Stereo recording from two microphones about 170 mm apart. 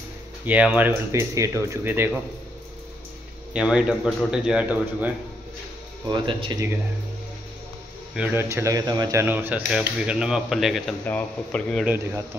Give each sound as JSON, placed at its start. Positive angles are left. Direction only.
{"t": 0.5, "sound": "speech", "side_deg": -10}
{"t": 3.5, "sound": "speech", "side_deg": -5}
{"t": 6.0, "sound": "speech", "side_deg": -30}
{"t": 8.1, "sound": "speech", "side_deg": -10}